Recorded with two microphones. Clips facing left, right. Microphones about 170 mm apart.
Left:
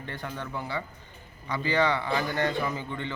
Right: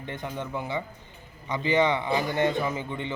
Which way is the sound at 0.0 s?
20° right (ahead or behind).